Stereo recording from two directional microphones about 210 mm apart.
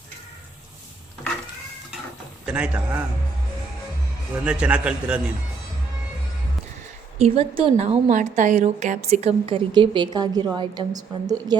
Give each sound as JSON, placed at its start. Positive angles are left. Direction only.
{"t": 2.5, "sound": "a man's voice", "side_deg": -5}
{"t": 4.4, "sound": "a man's voice", "side_deg": -5}
{"t": 7.2, "sound": "a woman's voice", "side_deg": -30}